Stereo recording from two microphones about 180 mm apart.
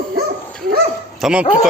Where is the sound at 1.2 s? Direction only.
5° right (ahead or behind).